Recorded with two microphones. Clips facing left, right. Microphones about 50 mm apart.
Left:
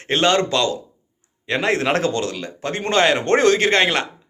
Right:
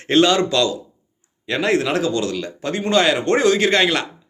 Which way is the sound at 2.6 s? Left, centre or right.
Left.